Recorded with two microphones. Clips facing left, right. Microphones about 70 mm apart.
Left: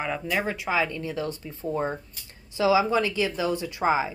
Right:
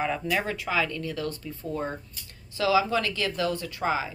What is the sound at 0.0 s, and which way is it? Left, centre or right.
Speech, centre.